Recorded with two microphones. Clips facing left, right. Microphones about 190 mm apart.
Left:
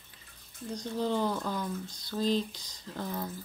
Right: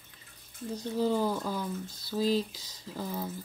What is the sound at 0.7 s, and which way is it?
Speech, 5° right (ahead or behind).